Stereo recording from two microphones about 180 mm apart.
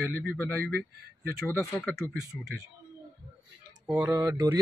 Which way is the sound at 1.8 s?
5° left (ahead or behind).